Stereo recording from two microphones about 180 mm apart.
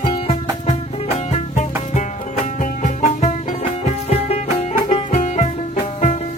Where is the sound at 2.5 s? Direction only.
40° left (ahead or behind).